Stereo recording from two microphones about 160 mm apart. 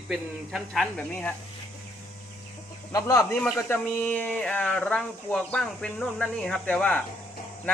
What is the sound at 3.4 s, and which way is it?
Speech, centre (ahead or behind).